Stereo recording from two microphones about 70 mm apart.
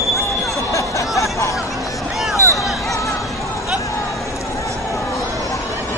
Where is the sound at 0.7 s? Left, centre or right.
Left.